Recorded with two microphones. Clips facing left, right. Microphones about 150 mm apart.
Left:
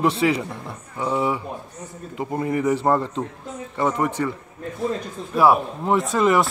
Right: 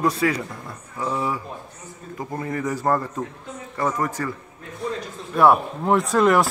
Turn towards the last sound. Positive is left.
turn(degrees=0)  # may be behind; listen again after turning